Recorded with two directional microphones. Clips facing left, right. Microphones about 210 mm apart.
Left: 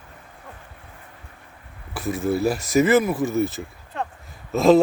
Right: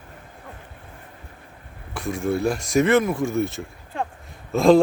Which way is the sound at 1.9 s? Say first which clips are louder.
Left 1 dB; 5° left (ahead or behind).